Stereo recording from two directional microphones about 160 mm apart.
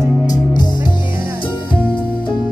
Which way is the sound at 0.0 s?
25° left (ahead or behind).